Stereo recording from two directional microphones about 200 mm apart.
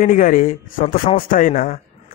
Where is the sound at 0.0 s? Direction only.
45° left (ahead or behind).